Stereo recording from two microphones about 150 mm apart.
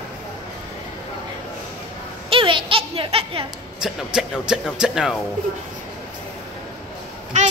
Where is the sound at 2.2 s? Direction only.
35° right (ahead or behind).